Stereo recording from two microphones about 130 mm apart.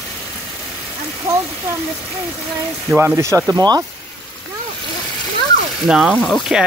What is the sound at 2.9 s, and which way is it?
Speech, 20° right (ahead or behind).